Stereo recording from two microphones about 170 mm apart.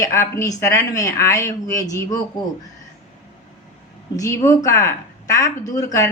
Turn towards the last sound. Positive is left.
turn(degrees=20)  # may be behind; listen again after turning